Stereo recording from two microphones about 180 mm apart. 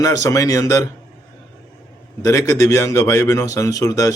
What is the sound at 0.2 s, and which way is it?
Speech, 20° left (ahead or behind).